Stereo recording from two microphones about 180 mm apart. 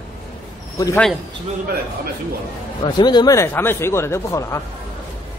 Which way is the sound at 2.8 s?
25° left (ahead or behind).